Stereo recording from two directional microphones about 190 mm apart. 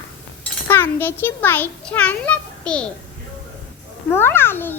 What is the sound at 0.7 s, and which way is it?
A child's voice, 10° left (ahead or behind).